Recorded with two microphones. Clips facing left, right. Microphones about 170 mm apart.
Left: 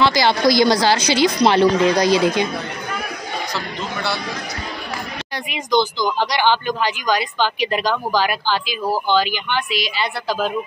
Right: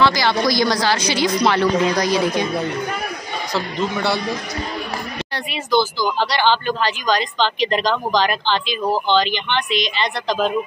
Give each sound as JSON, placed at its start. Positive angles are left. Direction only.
{"t": 0.0, "sound": "a woman's voice", "side_deg": 25}
{"t": 5.5, "sound": "speech", "side_deg": 15}